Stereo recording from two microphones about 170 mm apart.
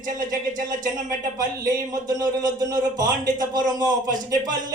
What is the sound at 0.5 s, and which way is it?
Speech, 50° right (ahead or behind).